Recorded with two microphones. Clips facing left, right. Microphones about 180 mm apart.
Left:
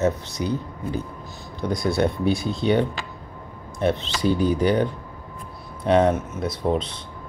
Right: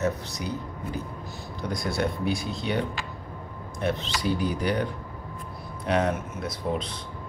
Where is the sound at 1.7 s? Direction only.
25° left (ahead or behind).